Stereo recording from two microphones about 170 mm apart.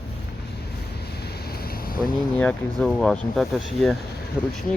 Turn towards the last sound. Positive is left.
turn(degrees=-5)  # may be behind; listen again after turning